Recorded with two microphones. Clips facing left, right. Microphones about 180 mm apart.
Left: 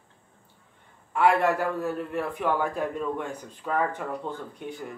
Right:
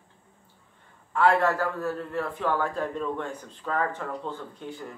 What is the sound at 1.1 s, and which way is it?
A man's voice, 15° left (ahead or behind).